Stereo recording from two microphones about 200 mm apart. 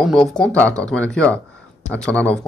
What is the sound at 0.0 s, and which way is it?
Speech, centre (ahead or behind).